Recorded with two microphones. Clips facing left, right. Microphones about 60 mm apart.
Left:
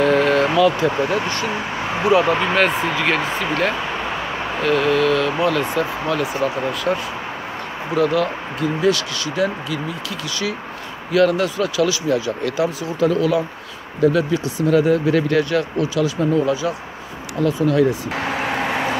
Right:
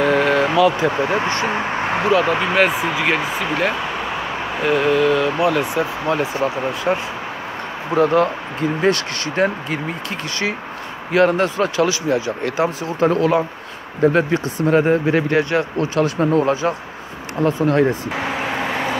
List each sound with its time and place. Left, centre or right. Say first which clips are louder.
0.0 s a sound: even; centre
1.1 s speech: right 2 dB; right
2.2 s speech: right 1 dB; centre
6.0 s speech: right 1 dB; right
11.1 s speech: right 1 dB; right
15.9 s speech: right 3 dB; right
18.2 s speech: left 1 dB; centre
18.5 s vehicle: left 1 dB; centre